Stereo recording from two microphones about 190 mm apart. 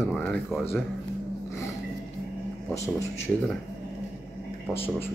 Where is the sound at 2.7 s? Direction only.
15° left (ahead or behind).